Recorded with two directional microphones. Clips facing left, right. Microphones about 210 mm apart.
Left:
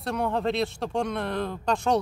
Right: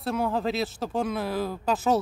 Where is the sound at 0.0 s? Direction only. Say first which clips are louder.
Even; centre (ahead or behind).